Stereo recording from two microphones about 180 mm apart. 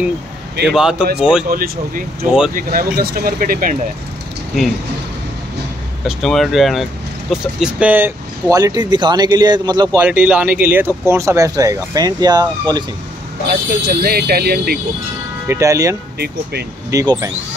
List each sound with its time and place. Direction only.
0.7 s speech: 5° right (ahead or behind)
1.5 s speech: 50° right (ahead or behind)
6.0 s speech: centre (ahead or behind); by 9.8 s 25° right (ahead or behind)
9.9 s speech: 10° right (ahead or behind)
13.5 s speech: 55° right (ahead or behind)
15.4 s speech: 15° right (ahead or behind)